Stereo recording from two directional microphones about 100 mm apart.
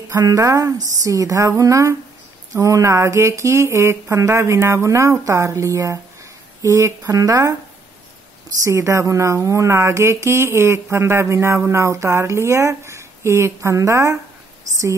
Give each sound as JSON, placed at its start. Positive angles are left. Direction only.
{"t": 0.1, "sound": "speech", "side_deg": -35}
{"t": 8.6, "sound": "speech", "side_deg": -30}